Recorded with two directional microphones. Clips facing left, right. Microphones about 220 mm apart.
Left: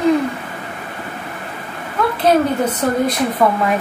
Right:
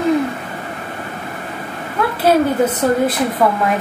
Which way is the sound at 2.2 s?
5° right (ahead or behind).